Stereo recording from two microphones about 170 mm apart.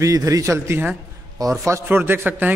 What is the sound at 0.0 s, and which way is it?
A man's voice, 20° right (ahead or behind).